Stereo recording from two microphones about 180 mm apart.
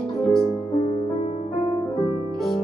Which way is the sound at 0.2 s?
Centre (ahead or behind).